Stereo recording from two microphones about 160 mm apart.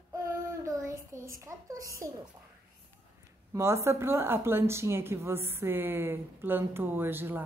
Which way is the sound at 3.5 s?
15° right (ahead or behind).